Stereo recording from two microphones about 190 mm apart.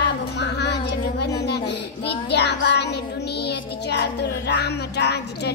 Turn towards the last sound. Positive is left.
turn(degrees=60)  # may be behind; listen again after turning